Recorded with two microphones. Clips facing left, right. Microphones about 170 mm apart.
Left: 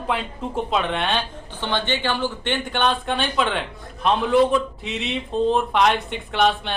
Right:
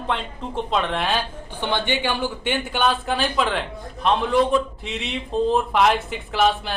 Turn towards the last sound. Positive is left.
turn(degrees=0)  # may be behind; listen again after turning